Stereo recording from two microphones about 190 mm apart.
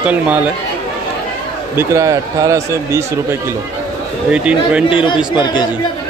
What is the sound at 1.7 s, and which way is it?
Speech, 15° right (ahead or behind).